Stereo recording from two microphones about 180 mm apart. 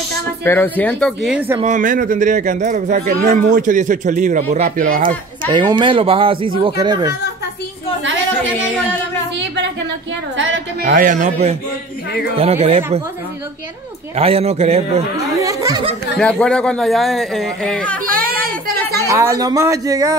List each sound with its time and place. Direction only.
0.4 s speech: 10° left (ahead or behind)
1.6 s speech: 45° right (ahead or behind)
5.5 s speech: 25° right (ahead or behind)
10.3 s a woman's voice: 90° right
10.8 s a man's voice: 50° right (ahead or behind)
14.1 s a man's voice: 35° right (ahead or behind)
15.1 s chatter: 15° right (ahead or behind)
16.2 s speech: 5° left (ahead or behind)
18.0 s a sound: 55° right (ahead or behind)
19.0 s speech: 15° right (ahead or behind)